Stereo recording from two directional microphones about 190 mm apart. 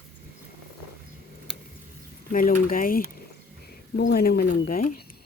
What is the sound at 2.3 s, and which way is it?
A woman's voice, 45° left (ahead or behind).